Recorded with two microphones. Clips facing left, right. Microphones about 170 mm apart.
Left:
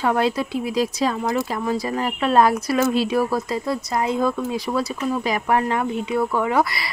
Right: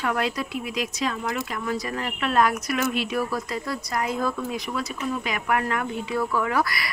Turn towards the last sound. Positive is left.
turn(degrees=25)  # may be behind; listen again after turning